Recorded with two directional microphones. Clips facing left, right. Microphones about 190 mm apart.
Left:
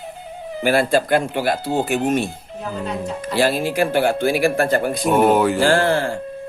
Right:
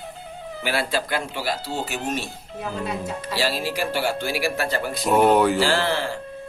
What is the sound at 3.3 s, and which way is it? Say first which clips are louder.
Speech: left 7 dB; 55° left (ahead or behind).